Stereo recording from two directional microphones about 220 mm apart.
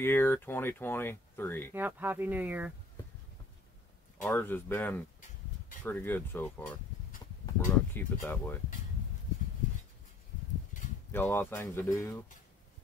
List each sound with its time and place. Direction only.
0.0 s speech: 10° left (ahead or behind)
1.7 s speech: 10° right (ahead or behind)
4.2 s speech: 10° left (ahead or behind)
10.7 s a sound: 35° left (ahead or behind)
11.1 s speech: 10° left (ahead or behind)